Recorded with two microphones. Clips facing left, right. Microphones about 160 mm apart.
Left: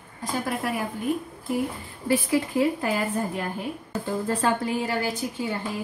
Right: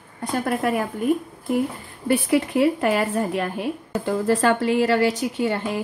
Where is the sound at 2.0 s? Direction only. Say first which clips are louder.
Right 3 dB; 65° right (ahead or behind).